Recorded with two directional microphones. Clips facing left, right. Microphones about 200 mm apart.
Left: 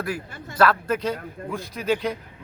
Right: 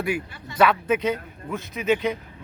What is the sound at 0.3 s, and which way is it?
Speech, 45° left (ahead or behind).